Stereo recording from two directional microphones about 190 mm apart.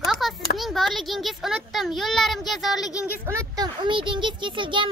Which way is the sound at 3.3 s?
20° right (ahead or behind).